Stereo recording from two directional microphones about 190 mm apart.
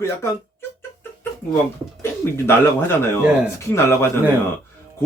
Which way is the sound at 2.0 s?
10° left (ahead or behind).